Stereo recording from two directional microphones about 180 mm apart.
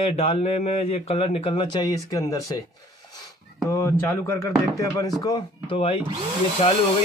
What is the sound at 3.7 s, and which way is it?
Speech, 15° left (ahead or behind).